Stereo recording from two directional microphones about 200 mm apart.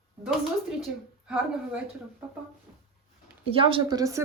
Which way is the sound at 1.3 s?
5° right (ahead or behind).